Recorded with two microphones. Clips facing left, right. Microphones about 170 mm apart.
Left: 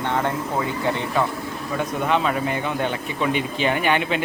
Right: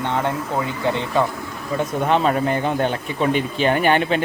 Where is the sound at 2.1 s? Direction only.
40° right (ahead or behind).